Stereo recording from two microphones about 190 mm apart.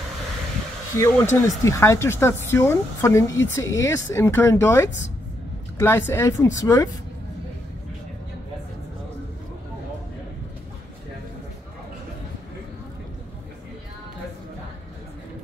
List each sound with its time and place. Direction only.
0.9 s speech: 15° left (ahead or behind)